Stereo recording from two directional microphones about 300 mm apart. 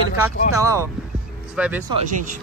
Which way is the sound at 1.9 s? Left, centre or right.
Right.